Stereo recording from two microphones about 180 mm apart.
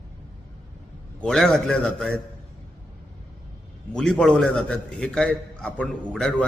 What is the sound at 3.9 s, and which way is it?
A man's voice, 5° left (ahead or behind).